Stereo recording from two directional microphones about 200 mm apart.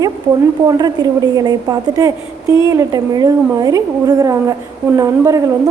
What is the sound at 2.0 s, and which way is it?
A woman's voice, 15° right (ahead or behind).